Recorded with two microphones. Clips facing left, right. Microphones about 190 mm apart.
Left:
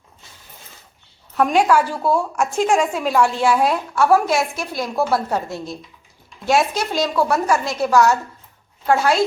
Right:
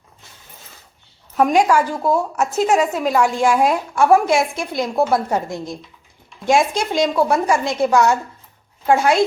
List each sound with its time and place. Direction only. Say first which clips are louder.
1.4 s a woman's voice: right 1 dB; 10° right (ahead or behind)